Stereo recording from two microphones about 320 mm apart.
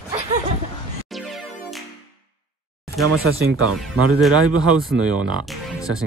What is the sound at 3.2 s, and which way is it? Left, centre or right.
Speech, right.